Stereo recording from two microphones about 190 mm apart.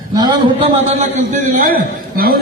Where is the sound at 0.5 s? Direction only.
35° right (ahead or behind).